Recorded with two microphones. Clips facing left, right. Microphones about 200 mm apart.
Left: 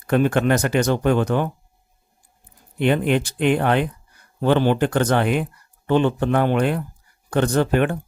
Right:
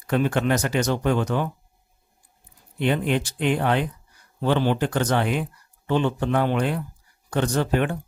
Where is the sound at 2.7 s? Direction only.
60° left (ahead or behind).